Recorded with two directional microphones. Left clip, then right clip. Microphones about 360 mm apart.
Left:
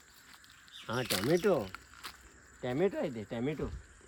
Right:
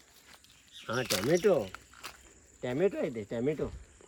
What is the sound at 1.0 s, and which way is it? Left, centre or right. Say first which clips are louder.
Speech: right 2 dB; centre.